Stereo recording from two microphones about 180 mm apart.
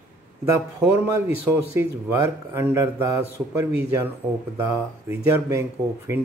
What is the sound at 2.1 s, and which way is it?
A man's voice, 10° right (ahead or behind).